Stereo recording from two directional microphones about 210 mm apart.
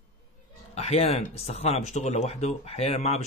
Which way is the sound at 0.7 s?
30° left (ahead or behind).